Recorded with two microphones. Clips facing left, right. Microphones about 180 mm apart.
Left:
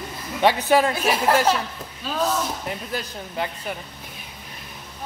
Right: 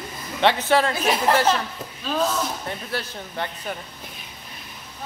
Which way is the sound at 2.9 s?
10° left (ahead or behind).